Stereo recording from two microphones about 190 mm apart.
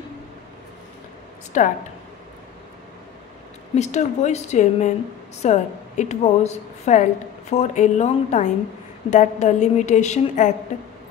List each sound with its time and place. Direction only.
1.5 s a woman's voice: 40° left (ahead or behind)
3.7 s a woman's voice: 35° left (ahead or behind)